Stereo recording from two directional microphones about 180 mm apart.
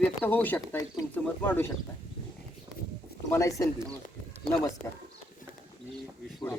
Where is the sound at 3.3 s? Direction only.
15° left (ahead or behind).